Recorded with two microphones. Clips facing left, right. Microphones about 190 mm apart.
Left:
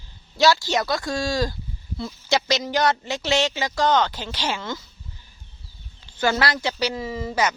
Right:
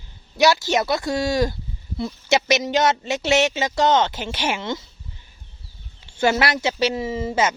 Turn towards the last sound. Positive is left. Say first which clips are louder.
# right 3 dB
turn(degrees=-25)  # may be behind; listen again after turning